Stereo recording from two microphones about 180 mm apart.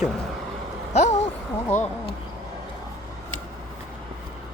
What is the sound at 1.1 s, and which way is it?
Speech, 15° left (ahead or behind).